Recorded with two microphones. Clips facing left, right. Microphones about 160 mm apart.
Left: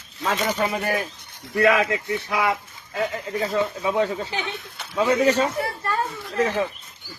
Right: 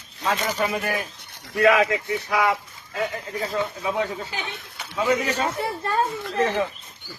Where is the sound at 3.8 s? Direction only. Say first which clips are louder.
Left 3 dB; 25° left (ahead or behind).